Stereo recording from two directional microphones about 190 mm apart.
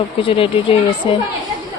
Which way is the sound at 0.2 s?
30° left (ahead or behind).